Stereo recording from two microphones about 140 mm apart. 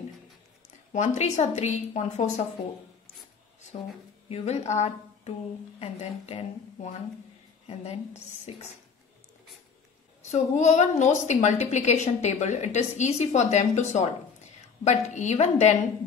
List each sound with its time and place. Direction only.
0.9 s a woman's voice: 55° left (ahead or behind)
4.3 s a woman's voice: 50° left (ahead or behind)
10.3 s a woman's voice: 55° left (ahead or behind)